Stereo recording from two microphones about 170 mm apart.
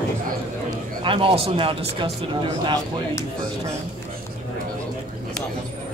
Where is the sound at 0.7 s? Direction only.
30° right (ahead or behind).